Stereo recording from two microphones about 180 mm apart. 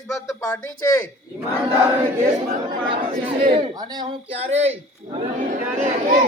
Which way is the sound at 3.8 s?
20° right (ahead or behind).